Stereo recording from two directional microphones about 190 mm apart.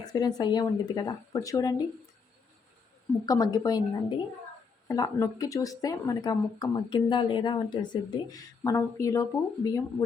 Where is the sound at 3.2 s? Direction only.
20° left (ahead or behind).